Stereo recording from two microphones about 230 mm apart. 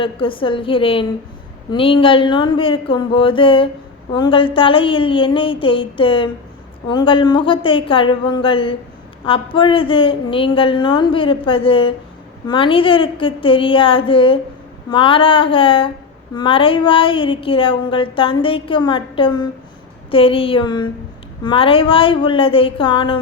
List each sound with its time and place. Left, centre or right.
0.0 s speech: left